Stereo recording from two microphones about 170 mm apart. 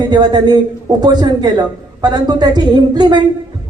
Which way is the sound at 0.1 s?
25° right (ahead or behind).